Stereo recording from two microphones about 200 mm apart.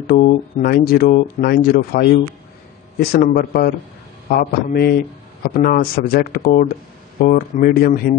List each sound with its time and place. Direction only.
0.0 s speech: 45° left (ahead or behind)
3.3 s speech: 50° left (ahead or behind)